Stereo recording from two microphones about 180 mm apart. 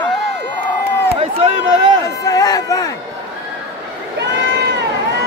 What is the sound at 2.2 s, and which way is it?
Speech, 20° left (ahead or behind).